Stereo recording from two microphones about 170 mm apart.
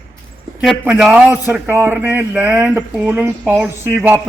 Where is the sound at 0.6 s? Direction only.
5° right (ahead or behind).